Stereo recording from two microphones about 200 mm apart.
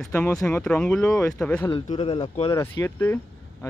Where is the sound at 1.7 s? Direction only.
25° left (ahead or behind).